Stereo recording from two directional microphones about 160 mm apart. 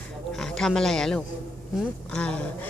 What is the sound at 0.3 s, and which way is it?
A man's voice, 5° left (ahead or behind).